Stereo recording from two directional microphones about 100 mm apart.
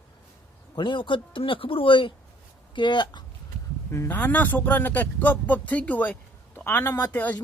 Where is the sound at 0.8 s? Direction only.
55° left (ahead or behind).